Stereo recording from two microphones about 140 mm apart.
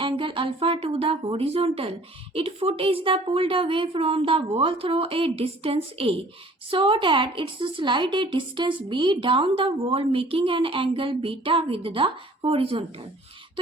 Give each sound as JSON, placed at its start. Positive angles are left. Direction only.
{"t": 0.0, "sound": "speech", "side_deg": -40}